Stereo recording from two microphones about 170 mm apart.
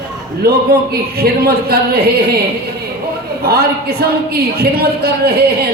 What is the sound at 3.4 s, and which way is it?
A man's voice, 65° right (ahead or behind).